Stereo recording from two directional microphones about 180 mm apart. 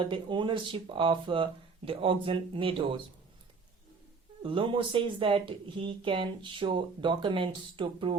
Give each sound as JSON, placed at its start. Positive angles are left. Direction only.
{"t": 0.0, "sound": "speech", "side_deg": -25}
{"t": 4.4, "sound": "speech", "side_deg": -30}